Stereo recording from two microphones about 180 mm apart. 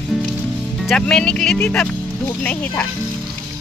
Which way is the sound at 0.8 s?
5° left (ahead or behind).